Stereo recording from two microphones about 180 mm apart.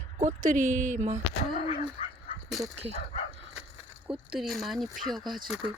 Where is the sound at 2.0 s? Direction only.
35° left (ahead or behind).